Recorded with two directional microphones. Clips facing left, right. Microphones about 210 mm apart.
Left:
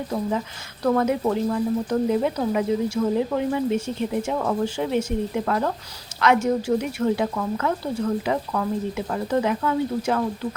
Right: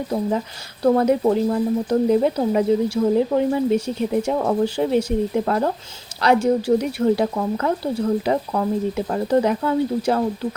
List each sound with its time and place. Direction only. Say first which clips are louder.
0.1 s speech: right 3 dB; 35° right (ahead or behind)